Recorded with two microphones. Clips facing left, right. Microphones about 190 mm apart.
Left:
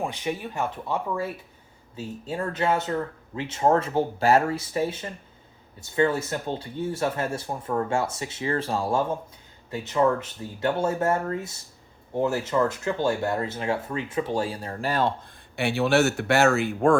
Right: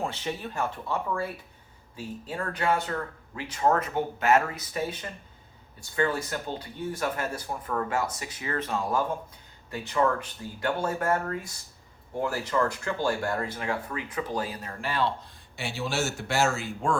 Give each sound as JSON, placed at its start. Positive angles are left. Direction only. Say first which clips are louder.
{"t": 0.0, "sound": "speech", "louder": "left 3 dB", "side_deg": 15}
{"t": 15.5, "sound": "speech", "louder": "left 9 dB", "side_deg": 60}